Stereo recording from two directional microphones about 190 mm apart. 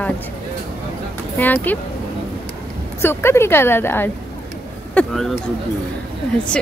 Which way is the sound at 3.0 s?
15° left (ahead or behind).